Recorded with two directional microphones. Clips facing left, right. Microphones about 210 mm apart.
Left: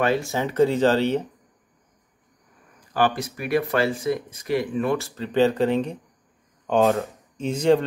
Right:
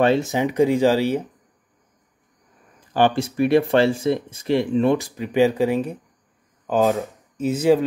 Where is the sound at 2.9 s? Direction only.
25° right (ahead or behind).